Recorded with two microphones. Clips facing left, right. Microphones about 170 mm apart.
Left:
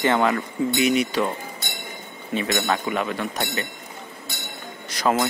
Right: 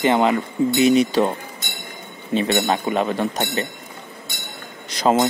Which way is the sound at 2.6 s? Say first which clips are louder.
Right 4 dB; 30° right (ahead or behind).